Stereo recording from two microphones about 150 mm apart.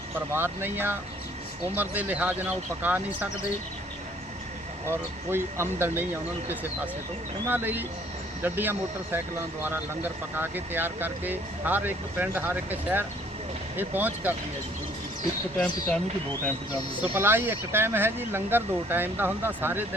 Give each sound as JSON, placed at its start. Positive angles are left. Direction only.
{"t": 0.3, "sound": "speech", "side_deg": -15}
{"t": 4.9, "sound": "speech", "side_deg": -15}
{"t": 7.4, "sound": "speech", "side_deg": -15}
{"t": 15.5, "sound": "speech", "side_deg": 10}
{"t": 17.0, "sound": "speech", "side_deg": -15}